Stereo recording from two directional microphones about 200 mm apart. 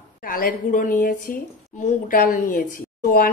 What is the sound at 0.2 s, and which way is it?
A woman's voice, 45° left (ahead or behind).